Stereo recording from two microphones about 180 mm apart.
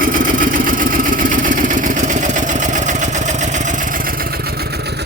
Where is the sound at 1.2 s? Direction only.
45° right (ahead or behind).